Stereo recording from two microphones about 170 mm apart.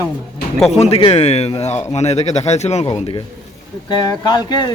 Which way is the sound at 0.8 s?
35° left (ahead or behind).